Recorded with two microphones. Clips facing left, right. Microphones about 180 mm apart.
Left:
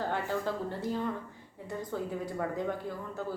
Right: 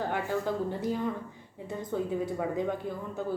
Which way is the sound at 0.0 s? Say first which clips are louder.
Right 2 dB; 15° right (ahead or behind).